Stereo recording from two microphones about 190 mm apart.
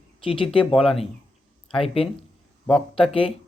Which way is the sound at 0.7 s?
Centre (ahead or behind).